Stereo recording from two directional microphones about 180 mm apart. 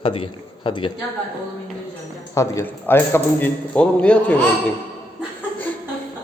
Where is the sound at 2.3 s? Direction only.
15° left (ahead or behind).